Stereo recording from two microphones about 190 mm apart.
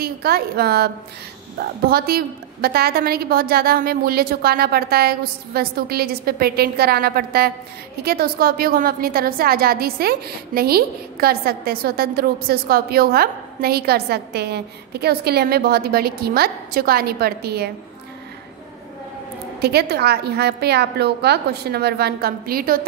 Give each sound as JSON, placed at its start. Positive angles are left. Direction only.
{"t": 0.0, "sound": "a woman's voice", "side_deg": -55}
{"t": 19.6, "sound": "a woman's voice", "side_deg": -55}